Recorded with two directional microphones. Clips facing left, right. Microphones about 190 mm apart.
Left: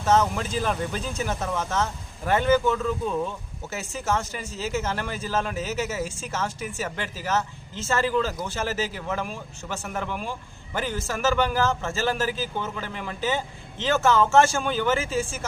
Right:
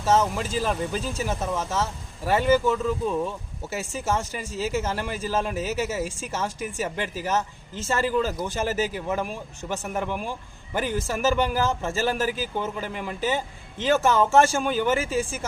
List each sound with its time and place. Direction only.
0.0 s speech: 5° right (ahead or behind)